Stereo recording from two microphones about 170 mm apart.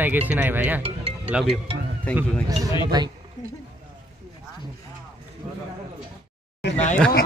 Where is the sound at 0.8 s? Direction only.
35° right (ahead or behind).